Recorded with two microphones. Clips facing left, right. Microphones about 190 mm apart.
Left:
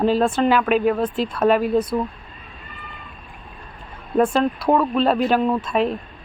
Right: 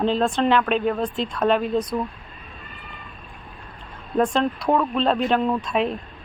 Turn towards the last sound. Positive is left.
turn(degrees=0)  # may be behind; listen again after turning